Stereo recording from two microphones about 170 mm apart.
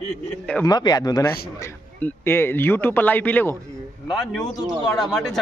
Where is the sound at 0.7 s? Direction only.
25° left (ahead or behind).